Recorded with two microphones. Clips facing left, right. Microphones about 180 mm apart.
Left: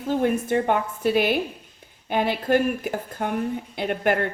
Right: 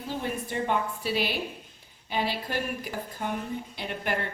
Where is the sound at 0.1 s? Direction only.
55° left (ahead or behind).